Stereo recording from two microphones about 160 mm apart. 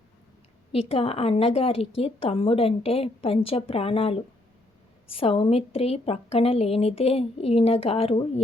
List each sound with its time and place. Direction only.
0.7 s a woman's voice: 35° left (ahead or behind)